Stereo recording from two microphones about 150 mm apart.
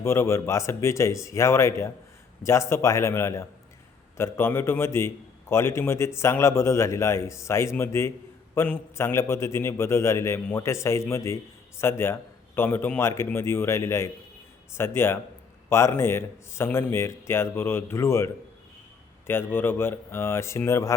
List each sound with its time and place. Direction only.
0.0 s a man's voice: 15° left (ahead or behind)
19.3 s a man's voice: 15° left (ahead or behind)